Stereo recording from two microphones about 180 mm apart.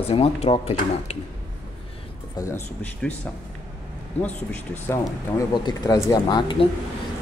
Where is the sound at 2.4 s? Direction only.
15° left (ahead or behind).